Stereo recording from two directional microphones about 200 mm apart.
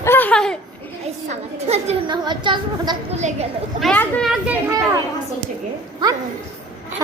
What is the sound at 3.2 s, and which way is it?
Speech, 35° right (ahead or behind).